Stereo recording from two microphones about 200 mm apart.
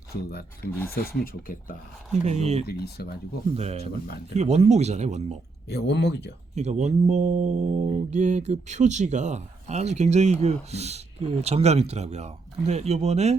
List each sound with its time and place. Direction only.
0.3 s speech: 50° left (ahead or behind)
2.2 s speech: 35° right (ahead or behind)
2.6 s speech: 50° left (ahead or behind)
3.5 s speech: 30° right (ahead or behind)
5.6 s speech: 55° left (ahead or behind)
6.6 s speech: 35° right (ahead or behind)